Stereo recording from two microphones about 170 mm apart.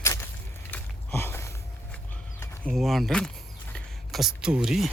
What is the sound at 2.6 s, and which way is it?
Speech, centre (ahead or behind).